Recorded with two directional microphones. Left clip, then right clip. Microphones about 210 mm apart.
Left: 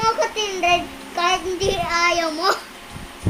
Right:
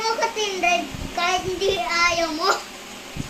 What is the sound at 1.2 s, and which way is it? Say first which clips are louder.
Child singing: left 2 dB; 25° left (ahead or behind).